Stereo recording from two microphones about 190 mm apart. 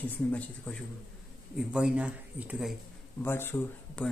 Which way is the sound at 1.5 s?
5° right (ahead or behind).